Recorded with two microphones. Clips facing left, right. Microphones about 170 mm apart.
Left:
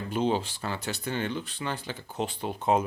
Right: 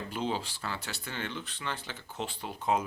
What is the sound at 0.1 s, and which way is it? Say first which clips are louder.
Speech: left 8 dB; 20° left (ahead or behind).